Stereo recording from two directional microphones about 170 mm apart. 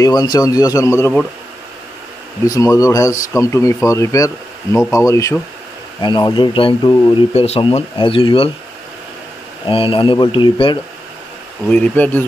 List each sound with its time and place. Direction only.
0.0 s speech: 20° left (ahead or behind)
2.4 s speech: 20° left (ahead or behind)
7.3 s speech: 35° left (ahead or behind)
9.7 s speech: 30° left (ahead or behind)
11.7 s speech: 10° left (ahead or behind)